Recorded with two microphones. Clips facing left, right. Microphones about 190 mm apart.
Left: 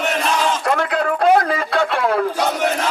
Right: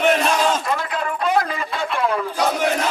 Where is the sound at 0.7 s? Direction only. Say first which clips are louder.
Left 5 dB; 65° left (ahead or behind).